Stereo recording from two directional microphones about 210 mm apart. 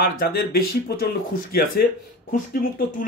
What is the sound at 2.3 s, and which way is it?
Speech, 45° left (ahead or behind).